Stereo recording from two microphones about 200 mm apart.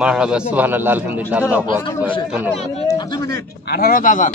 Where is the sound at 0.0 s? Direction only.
5° right (ahead or behind).